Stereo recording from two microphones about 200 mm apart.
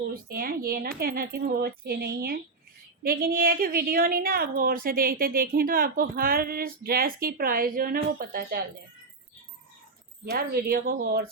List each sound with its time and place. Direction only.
0.1 s a woman's voice: 50° right (ahead or behind)
10.3 s a woman's voice: 50° right (ahead or behind)